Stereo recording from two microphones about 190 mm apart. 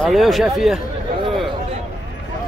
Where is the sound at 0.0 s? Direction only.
Centre (ahead or behind).